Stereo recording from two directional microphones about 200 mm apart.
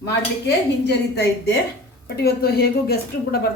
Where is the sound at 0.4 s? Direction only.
55° left (ahead or behind).